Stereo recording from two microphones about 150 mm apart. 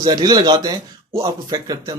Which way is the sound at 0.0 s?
30° right (ahead or behind).